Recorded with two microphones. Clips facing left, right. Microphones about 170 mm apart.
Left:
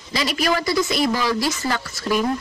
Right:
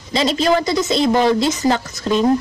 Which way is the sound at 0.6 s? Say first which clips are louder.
Right 3 dB; 20° right (ahead or behind).